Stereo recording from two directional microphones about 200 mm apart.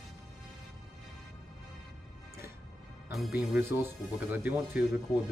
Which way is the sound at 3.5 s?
10° right (ahead or behind).